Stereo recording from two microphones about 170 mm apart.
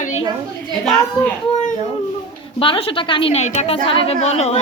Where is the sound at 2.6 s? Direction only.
30° left (ahead or behind).